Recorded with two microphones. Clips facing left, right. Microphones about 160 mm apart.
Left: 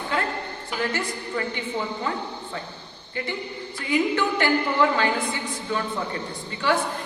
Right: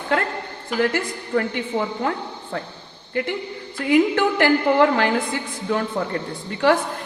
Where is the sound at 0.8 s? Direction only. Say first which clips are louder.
Right 6 dB; 60° right (ahead or behind).